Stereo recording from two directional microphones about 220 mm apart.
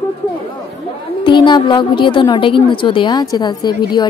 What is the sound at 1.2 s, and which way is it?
A woman's voice, 20° left (ahead or behind).